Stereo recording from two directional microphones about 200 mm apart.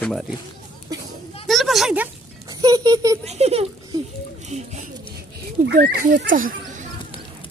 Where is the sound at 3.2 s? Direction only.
30° right (ahead or behind).